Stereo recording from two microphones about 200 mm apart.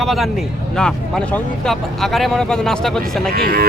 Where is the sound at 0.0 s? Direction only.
Centre (ahead or behind).